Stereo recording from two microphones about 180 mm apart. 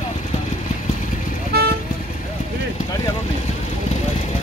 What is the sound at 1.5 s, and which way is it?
Vehicle, 60° right (ahead or behind).